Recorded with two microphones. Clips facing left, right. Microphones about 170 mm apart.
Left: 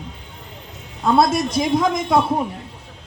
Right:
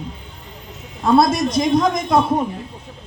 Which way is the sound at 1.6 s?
5° left (ahead or behind).